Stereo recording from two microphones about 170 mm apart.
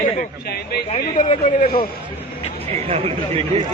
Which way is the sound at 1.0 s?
50° left (ahead or behind).